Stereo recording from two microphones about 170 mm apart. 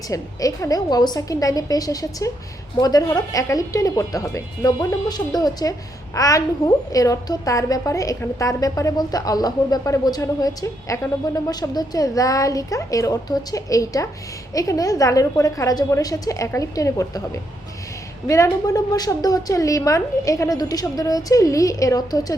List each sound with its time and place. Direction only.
0.1 s a woman's voice: 20° left (ahead or behind)
18.3 s a woman's voice: 20° left (ahead or behind)